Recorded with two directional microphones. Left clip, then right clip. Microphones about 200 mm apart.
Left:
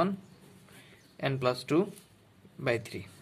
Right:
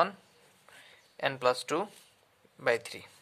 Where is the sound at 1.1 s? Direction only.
20° right (ahead or behind).